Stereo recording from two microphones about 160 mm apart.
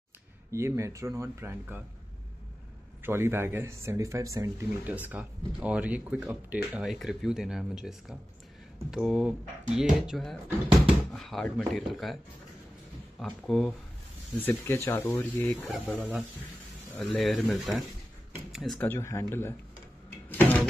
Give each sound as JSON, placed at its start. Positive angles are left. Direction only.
{"t": 0.5, "sound": "speech", "side_deg": -15}
{"t": 3.0, "sound": "speech", "side_deg": -15}
{"t": 13.2, "sound": "speech", "side_deg": 0}
{"t": 14.3, "sound": "speech", "side_deg": 15}
{"t": 16.0, "sound": "speech", "side_deg": -10}
{"t": 16.9, "sound": "speech", "side_deg": 0}
{"t": 18.8, "sound": "speech", "side_deg": 15}